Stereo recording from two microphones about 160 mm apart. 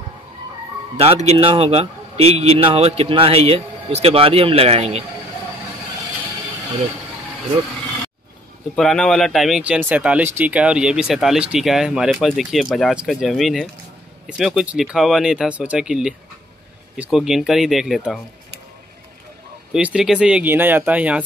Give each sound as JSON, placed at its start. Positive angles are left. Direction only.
{"t": 0.9, "sound": "a man's voice", "side_deg": -40}
{"t": 8.7, "sound": "speech", "side_deg": 5}
{"t": 19.7, "sound": "speech", "side_deg": -5}